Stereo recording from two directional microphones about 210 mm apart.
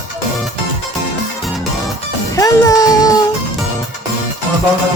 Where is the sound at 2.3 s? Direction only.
15° left (ahead or behind).